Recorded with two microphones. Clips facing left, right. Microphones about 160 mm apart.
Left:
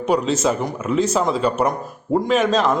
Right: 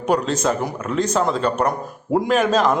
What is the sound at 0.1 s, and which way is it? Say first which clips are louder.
A man's voice: left 1 dB; 5° left (ahead or behind).